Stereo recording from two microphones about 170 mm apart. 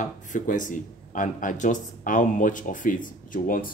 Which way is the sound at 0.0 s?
50° left (ahead or behind).